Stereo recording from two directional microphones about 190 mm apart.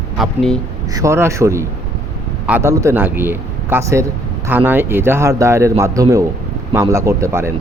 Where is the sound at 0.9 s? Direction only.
15° right (ahead or behind).